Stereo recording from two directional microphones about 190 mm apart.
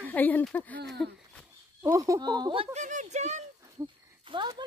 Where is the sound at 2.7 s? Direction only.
40° right (ahead or behind).